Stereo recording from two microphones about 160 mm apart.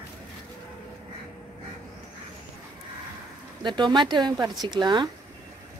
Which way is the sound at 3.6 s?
30° right (ahead or behind).